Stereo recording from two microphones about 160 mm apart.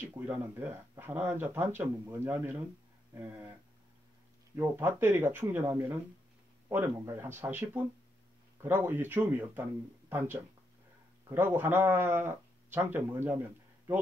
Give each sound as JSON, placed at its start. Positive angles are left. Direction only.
{"t": 0.0, "sound": "speech", "side_deg": -10}
{"t": 4.6, "sound": "speech", "side_deg": -20}